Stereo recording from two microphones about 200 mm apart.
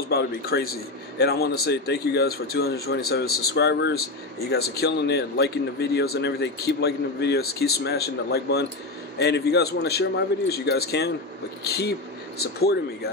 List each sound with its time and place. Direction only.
0.1 s a man's voice: 50° left (ahead or behind)